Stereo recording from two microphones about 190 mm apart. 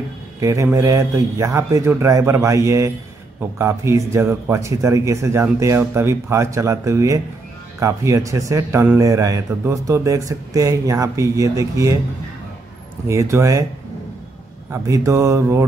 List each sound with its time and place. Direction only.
0.4 s speech: 15° right (ahead or behind)
13.1 s speech: 15° right (ahead or behind)
14.7 s speech: 15° right (ahead or behind)